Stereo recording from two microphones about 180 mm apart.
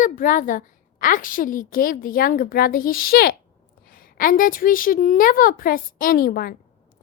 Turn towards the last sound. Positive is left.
turn(degrees=55)  # may be behind; listen again after turning